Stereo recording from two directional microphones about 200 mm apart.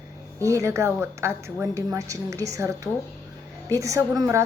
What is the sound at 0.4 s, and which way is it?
A woman's voice, 15° right (ahead or behind).